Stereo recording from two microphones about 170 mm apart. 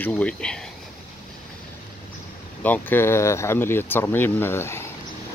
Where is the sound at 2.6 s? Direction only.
10° left (ahead or behind).